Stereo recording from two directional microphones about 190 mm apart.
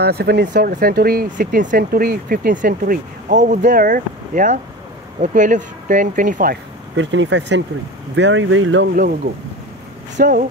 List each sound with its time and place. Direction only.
0.0 s speech: 60° right (ahead or behind)
7.0 s speech: 75° right (ahead or behind)
10.1 s speech: 45° right (ahead or behind)